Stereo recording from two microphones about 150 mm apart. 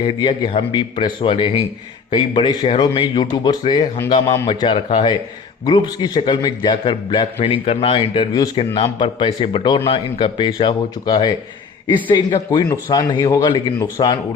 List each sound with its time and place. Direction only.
0.0 s a man's voice: 30° left (ahead or behind)